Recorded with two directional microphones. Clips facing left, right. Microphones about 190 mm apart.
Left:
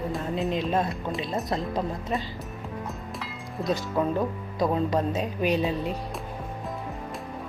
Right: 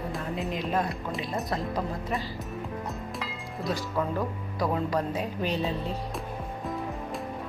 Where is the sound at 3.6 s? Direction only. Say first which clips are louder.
Left 4 dB; 20° left (ahead or behind).